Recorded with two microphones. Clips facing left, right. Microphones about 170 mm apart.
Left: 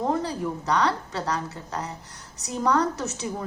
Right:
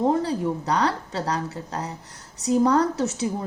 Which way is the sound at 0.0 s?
30° right (ahead or behind).